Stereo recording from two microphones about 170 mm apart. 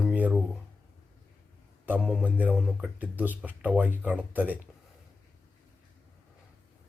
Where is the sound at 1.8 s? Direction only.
5° right (ahead or behind).